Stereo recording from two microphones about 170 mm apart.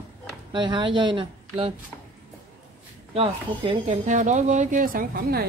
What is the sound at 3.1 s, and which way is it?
Speech, 35° right (ahead or behind).